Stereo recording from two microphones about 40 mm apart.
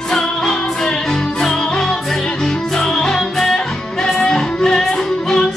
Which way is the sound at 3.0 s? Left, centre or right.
Centre.